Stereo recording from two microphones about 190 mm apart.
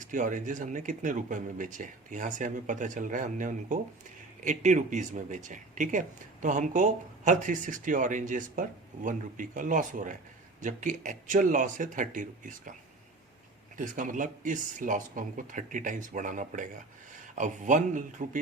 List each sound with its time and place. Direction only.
0.0 s speech: 45° right (ahead or behind)
13.7 s speech: 45° right (ahead or behind)